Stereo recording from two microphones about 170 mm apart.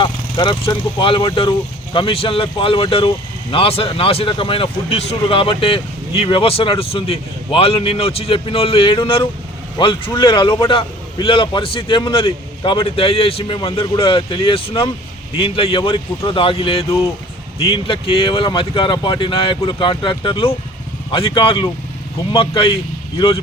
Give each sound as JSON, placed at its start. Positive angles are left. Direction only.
{"t": 0.0, "sound": "a man's voice", "side_deg": 30}